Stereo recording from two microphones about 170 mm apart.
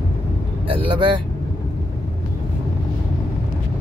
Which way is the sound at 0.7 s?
30° right (ahead or behind).